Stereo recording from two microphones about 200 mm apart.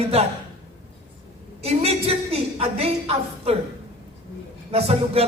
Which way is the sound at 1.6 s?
30° right (ahead or behind).